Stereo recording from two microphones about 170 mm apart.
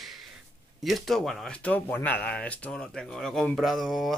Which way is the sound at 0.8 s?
Centre (ahead or behind).